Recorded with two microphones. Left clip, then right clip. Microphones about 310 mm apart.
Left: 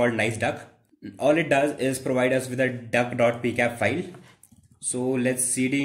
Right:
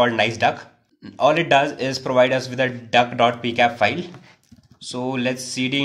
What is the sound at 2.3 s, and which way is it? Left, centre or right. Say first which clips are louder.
Speech: right 3 dB; right.